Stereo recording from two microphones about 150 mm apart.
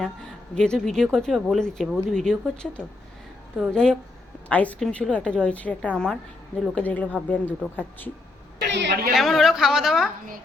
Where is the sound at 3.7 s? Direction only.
5° left (ahead or behind).